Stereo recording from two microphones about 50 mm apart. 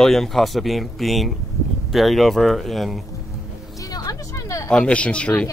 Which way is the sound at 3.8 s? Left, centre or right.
Left.